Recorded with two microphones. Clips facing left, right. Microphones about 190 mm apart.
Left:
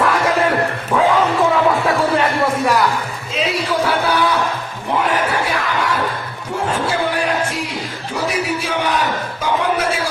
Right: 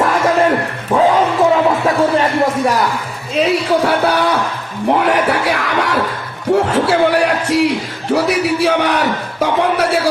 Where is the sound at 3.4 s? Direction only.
60° right (ahead or behind).